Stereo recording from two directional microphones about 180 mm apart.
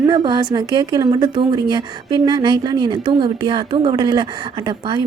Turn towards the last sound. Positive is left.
turn(degrees=-25)  # may be behind; listen again after turning